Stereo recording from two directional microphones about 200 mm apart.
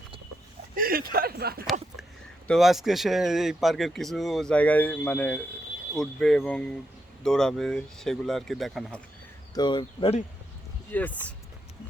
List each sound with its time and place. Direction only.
0.8 s speech: 45° right (ahead or behind)
2.5 s speech: centre (ahead or behind)
9.6 s speech: 25° left (ahead or behind)
10.9 s speech: 10° left (ahead or behind)